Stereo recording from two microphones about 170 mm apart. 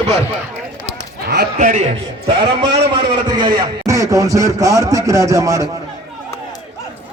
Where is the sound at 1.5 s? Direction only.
50° right (ahead or behind).